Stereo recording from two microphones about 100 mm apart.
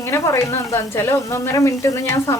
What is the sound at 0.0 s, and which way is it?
Speech, 25° left (ahead or behind).